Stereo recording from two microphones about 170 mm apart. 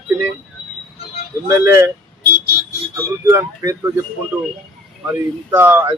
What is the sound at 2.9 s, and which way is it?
Speech, 20° right (ahead or behind).